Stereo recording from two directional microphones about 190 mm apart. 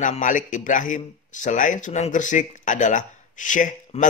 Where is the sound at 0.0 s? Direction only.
45° left (ahead or behind).